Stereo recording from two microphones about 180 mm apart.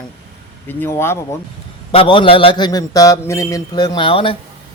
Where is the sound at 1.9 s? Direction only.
30° left (ahead or behind).